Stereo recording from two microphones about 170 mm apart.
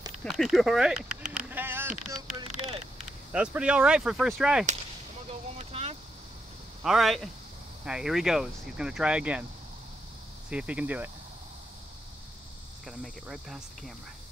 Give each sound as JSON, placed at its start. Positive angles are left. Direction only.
{"t": 0.2, "sound": "speech", "side_deg": 0}
{"t": 1.5, "sound": "vehicle", "side_deg": -10}
{"t": 3.3, "sound": "speech", "side_deg": -5}
{"t": 5.6, "sound": "vehicle", "side_deg": -35}
{"t": 6.8, "sound": "speech", "side_deg": 0}
{"t": 10.5, "sound": "speech", "side_deg": -5}
{"t": 12.8, "sound": "speech", "side_deg": 0}